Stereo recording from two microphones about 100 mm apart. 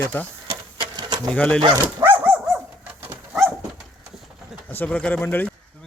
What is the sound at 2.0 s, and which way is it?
Dog, 20° right (ahead or behind).